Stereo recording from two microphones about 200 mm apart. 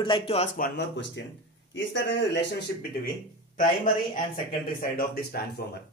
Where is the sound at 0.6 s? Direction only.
60° left (ahead or behind).